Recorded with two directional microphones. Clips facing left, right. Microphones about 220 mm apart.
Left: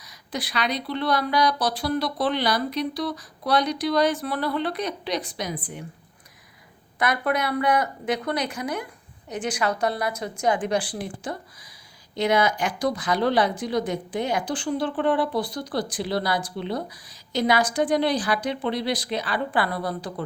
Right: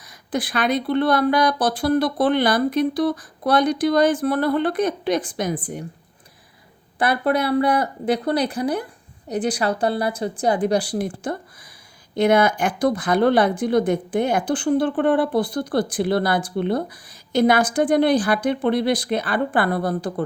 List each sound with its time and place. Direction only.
0.0 s a woman's voice: 50° right (ahead or behind)
7.0 s a woman's voice: 30° right (ahead or behind); by 20.2 s 50° right (ahead or behind)